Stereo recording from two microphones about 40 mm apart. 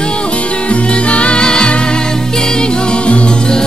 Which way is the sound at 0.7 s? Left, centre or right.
Left.